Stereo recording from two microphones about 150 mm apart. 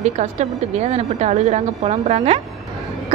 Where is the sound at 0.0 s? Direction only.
50° right (ahead or behind).